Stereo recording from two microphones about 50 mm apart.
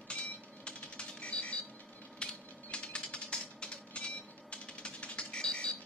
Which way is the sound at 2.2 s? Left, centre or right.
Centre.